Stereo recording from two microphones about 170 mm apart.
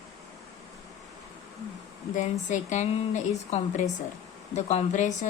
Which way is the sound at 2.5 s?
45° left (ahead or behind).